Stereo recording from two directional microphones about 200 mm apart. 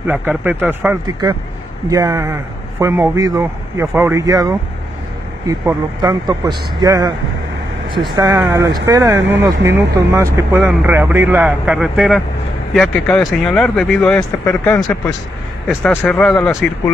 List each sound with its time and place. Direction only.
0.0 s speech: 10° right (ahead or behind); by 16.9 s 5° left (ahead or behind)